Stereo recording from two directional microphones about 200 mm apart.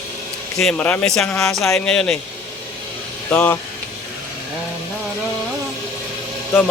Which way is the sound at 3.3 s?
10° left (ahead or behind).